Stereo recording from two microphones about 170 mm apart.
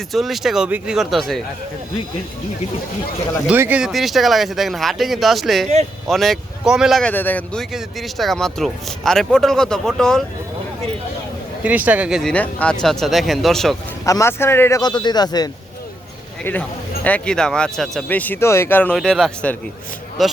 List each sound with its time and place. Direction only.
0.1 s speech: centre (ahead or behind)
3.4 s speech: 10° right (ahead or behind)
7.1 s speech: 10° left (ahead or behind)
11.6 s speech: 10° right (ahead or behind)
12.3 s speech: 10° left (ahead or behind)
14.0 s a man's voice: 20° left (ahead or behind)
16.4 s speech: 10° left (ahead or behind)